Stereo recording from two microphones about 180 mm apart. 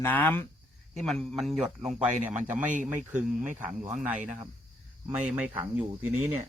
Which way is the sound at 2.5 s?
45° right (ahead or behind).